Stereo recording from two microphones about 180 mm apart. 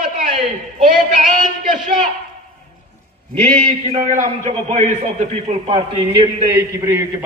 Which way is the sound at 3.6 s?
45° right (ahead or behind).